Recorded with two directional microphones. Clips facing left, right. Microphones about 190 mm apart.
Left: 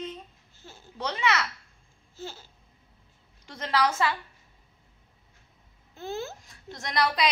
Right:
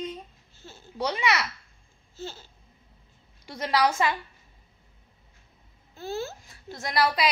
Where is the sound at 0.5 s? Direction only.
15° left (ahead or behind).